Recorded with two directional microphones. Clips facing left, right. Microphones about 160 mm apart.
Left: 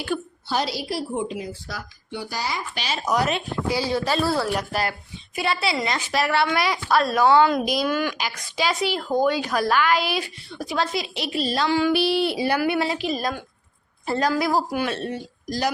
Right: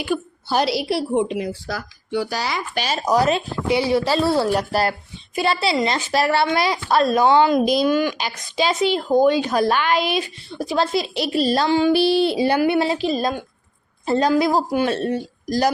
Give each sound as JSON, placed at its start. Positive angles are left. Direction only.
{"t": 0.0, "sound": "a sound", "side_deg": -10}
{"t": 0.5, "sound": "a woman's voice", "side_deg": -70}
{"t": 2.7, "sound": "speech", "side_deg": -45}
{"t": 3.1, "sound": "speech", "side_deg": -35}
{"t": 11.7, "sound": "speech", "side_deg": -25}
{"t": 14.9, "sound": "a man's voice", "side_deg": -40}